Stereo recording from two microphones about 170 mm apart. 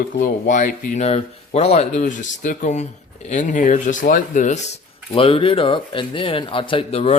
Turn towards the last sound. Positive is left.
turn(degrees=40)  # may be behind; listen again after turning